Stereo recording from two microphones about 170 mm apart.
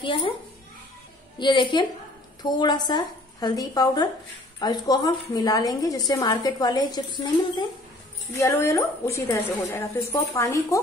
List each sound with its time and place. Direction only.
0.0 s a woman's voice: 30° left (ahead or behind)
1.4 s a woman's voice: 30° left (ahead or behind)